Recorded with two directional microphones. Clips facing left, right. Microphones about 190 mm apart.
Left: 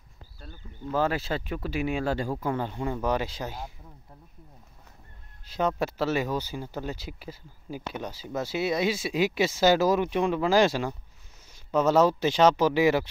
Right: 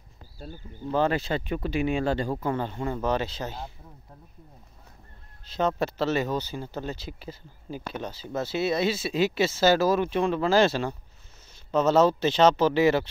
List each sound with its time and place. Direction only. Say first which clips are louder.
0.4 s speech: right 4 dB; 35° right (ahead or behind)
0.9 s speech: right 2 dB; 5° left (ahead or behind)
5.4 s speech: right 1 dB; 10° left (ahead or behind)